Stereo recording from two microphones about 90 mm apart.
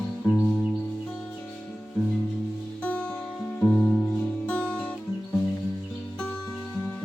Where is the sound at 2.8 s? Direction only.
15° left (ahead or behind).